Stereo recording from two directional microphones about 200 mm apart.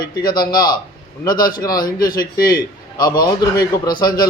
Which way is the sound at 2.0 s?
45° left (ahead or behind).